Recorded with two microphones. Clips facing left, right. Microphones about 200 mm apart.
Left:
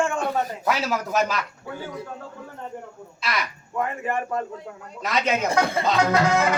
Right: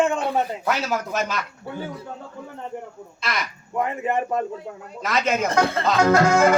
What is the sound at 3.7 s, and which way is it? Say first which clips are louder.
Speech: right 3 dB; 20° right (ahead or behind).